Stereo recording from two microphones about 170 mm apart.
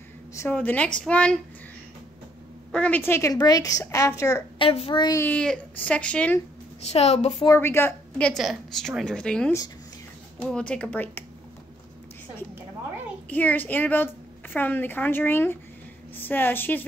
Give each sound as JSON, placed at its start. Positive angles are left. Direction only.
{"t": 0.3, "sound": "a woman's voice", "side_deg": 15}
{"t": 2.7, "sound": "a woman's voice", "side_deg": 10}
{"t": 4.6, "sound": "a woman's voice", "side_deg": 35}
{"t": 5.2, "sound": "a woman's voice", "side_deg": 5}
{"t": 6.8, "sound": "a woman's voice", "side_deg": 40}
{"t": 7.3, "sound": "a woman's voice", "side_deg": 20}
{"t": 8.3, "sound": "a woman's voice", "side_deg": 0}
{"t": 13.3, "sound": "a woman's voice", "side_deg": 10}